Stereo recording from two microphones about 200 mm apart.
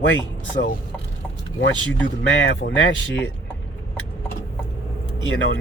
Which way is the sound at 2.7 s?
65° left (ahead or behind).